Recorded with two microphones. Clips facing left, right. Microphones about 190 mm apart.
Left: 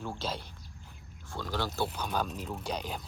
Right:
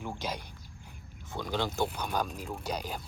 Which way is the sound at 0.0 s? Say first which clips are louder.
Even; 15° right (ahead or behind).